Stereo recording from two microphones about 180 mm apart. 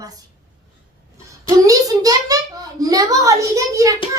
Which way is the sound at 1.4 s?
20° right (ahead or behind).